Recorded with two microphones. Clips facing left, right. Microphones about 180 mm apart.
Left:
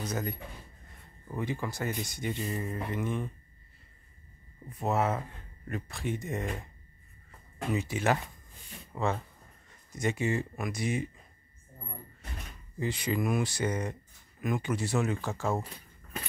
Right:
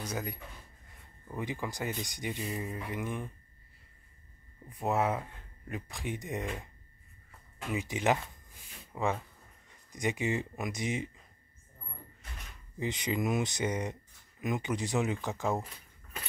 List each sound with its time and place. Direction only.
0.0 s speech: 10° right (ahead or behind)
2.3 s speech: centre (ahead or behind)
4.6 s speech: 15° right (ahead or behind)
7.7 s speech: 15° right (ahead or behind)
12.7 s speech: 20° right (ahead or behind)